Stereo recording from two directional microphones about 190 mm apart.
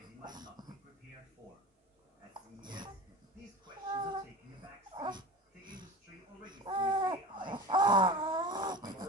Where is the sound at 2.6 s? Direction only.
25° right (ahead or behind).